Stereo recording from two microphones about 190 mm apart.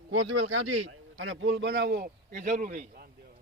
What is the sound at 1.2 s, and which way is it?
A man's voice, 90° right.